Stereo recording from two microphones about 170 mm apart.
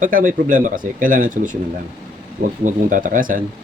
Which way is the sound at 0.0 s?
55° right (ahead or behind).